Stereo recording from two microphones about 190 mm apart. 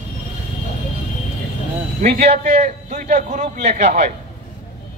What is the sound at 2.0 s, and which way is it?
A man's voice, 35° right (ahead or behind).